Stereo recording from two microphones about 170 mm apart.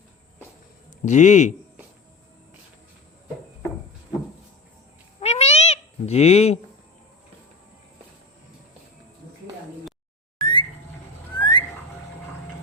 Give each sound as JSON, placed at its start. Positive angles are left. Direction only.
{"t": 1.0, "sound": "a man's voice", "side_deg": 45}
{"t": 5.2, "sound": "cat", "side_deg": 40}
{"t": 10.4, "sound": "a sound", "side_deg": 30}
{"t": 11.3, "sound": "whistling", "side_deg": 25}